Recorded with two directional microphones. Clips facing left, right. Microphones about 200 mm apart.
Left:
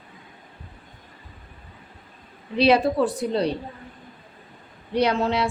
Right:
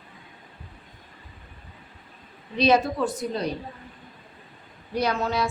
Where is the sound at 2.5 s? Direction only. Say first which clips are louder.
Left 3 dB; 30° left (ahead or behind).